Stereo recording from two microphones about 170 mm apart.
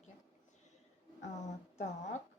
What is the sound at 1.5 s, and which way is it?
Speech, 45° left (ahead or behind).